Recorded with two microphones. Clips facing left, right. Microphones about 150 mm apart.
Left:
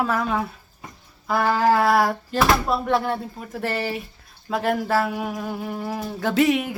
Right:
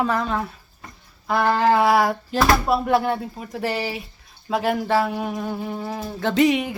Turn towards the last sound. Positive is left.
turn(degrees=0)  # may be behind; listen again after turning